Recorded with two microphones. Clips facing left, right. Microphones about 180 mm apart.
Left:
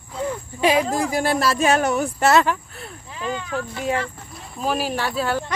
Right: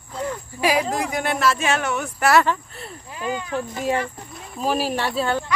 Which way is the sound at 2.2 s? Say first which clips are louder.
Even; 15° left (ahead or behind).